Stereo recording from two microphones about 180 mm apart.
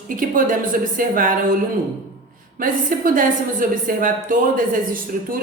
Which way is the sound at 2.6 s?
50° right (ahead or behind).